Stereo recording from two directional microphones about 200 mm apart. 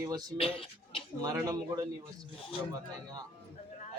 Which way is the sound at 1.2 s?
20° right (ahead or behind).